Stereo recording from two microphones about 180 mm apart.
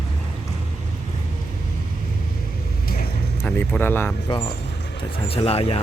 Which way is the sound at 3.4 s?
10° left (ahead or behind).